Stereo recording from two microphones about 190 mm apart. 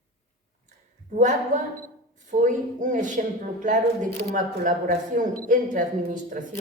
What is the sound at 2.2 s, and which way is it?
Speech, 40° right (ahead or behind).